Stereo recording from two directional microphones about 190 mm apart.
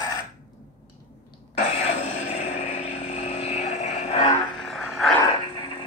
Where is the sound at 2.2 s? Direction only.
35° left (ahead or behind).